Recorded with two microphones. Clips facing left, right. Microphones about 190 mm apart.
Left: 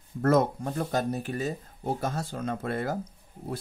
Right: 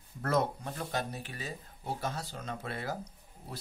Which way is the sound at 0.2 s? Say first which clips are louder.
Left 7 dB; 50° left (ahead or behind).